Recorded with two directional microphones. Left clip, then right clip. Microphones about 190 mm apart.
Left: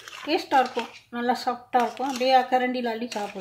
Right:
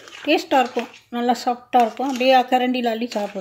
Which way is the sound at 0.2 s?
40° right (ahead or behind).